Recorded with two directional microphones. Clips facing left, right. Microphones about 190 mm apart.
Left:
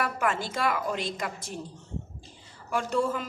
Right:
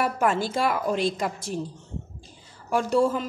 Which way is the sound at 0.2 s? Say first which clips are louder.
Right 5 dB; 30° right (ahead or behind).